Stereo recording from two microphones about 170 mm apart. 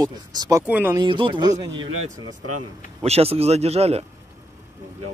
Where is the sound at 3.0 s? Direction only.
35° right (ahead or behind).